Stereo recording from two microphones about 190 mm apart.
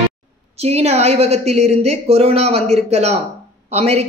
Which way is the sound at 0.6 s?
35° right (ahead or behind).